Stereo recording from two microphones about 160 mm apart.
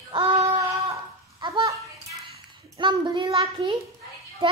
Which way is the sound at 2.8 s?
30° right (ahead or behind).